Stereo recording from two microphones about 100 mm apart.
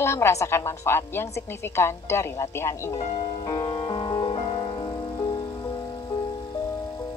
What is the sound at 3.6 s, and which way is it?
Music, 55° left (ahead or behind).